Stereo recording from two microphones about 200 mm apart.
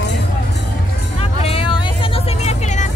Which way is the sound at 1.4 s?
30° left (ahead or behind).